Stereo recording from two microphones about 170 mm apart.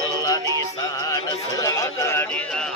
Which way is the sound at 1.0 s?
20° left (ahead or behind).